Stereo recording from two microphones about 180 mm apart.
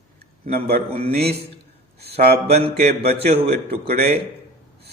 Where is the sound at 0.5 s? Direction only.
60° right (ahead or behind).